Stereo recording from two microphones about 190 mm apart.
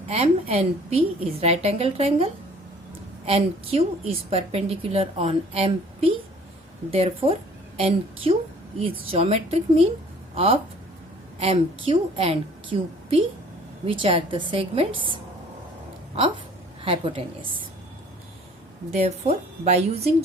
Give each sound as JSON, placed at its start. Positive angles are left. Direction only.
{"t": 0.1, "sound": "a woman's voice", "side_deg": -30}
{"t": 6.9, "sound": "a woman's voice", "side_deg": -30}
{"t": 16.8, "sound": "a woman's voice", "side_deg": -30}
{"t": 18.9, "sound": "a woman's voice", "side_deg": -35}